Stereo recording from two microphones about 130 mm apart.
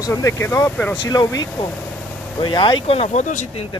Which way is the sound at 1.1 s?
30° left (ahead or behind).